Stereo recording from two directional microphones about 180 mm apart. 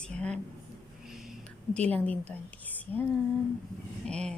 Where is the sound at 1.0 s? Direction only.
Centre (ahead or behind).